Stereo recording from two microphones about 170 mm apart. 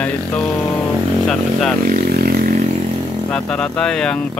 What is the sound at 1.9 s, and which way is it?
Vehicle, 60° right (ahead or behind).